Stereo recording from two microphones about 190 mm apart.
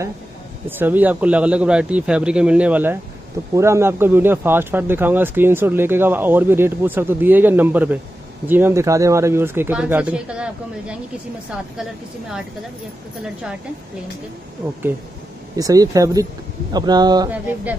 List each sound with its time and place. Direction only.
0.7 s speech: 10° right (ahead or behind)
13.2 s a woman's voice: 5° right (ahead or behind)
15.5 s speech: 20° right (ahead or behind)